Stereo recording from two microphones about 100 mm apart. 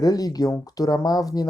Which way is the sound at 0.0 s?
40° left (ahead or behind).